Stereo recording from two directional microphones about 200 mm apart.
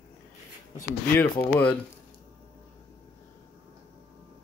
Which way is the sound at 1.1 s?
10° left (ahead or behind).